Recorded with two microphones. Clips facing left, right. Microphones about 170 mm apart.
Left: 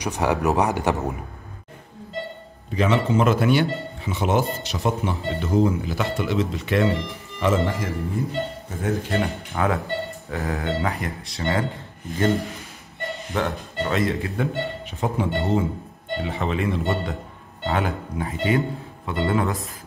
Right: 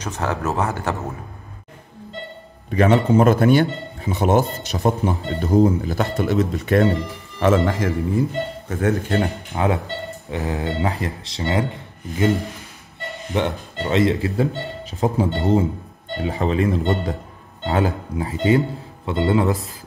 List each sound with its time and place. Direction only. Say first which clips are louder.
0.0 s speech: left 2 dB; 15° left (ahead or behind)
2.7 s speech: right 5 dB; 50° right (ahead or behind)
7.4 s a man's voice: right 4 dB; 80° right
8.6 s speech: right 5 dB; 70° right (ahead or behind)
9.5 s speech: right 2 dB; 20° right (ahead or behind)
13.3 s speech: right 4 dB; 25° right (ahead or behind)